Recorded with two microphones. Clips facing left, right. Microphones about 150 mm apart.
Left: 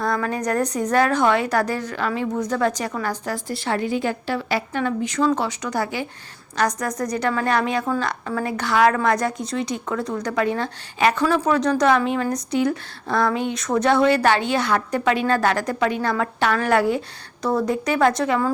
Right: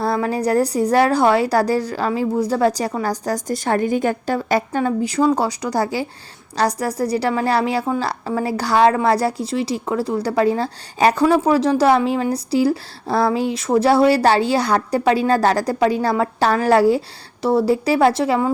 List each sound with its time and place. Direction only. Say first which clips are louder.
0.0 s a woman's voice: right 4 dB; 30° right (ahead or behind)
4.8 s a woman's voice: right 1 dB; 35° right (ahead or behind)